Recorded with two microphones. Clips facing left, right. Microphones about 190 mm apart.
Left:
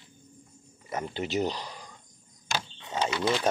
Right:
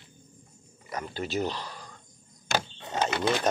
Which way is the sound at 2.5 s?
50° right (ahead or behind).